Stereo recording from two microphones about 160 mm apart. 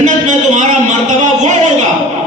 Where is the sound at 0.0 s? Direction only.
50° right (ahead or behind).